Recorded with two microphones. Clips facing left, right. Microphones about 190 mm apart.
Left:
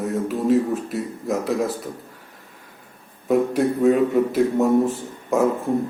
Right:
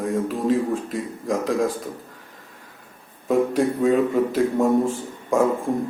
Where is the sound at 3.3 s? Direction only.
5° left (ahead or behind).